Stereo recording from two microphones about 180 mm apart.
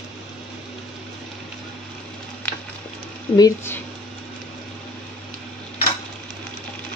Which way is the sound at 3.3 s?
15° left (ahead or behind).